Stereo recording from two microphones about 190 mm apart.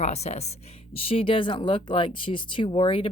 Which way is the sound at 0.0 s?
35° left (ahead or behind).